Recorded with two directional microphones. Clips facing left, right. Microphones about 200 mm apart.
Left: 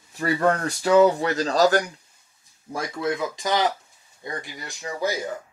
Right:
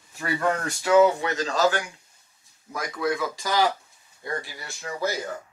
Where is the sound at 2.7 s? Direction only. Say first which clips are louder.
Left 1 dB; 25° left (ahead or behind).